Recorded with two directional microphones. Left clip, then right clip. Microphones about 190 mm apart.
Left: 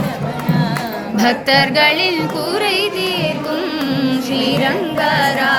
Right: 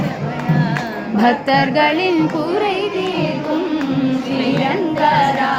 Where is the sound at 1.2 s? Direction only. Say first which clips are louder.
Left 1 dB; 15° right (ahead or behind).